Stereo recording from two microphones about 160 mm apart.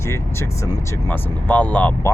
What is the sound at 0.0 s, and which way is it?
Speech, 15° left (ahead or behind).